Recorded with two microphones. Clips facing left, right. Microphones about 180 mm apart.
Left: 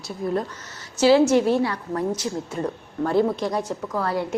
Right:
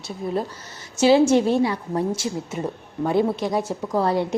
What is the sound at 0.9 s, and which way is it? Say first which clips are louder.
A woman's voice: even; 20° right (ahead or behind).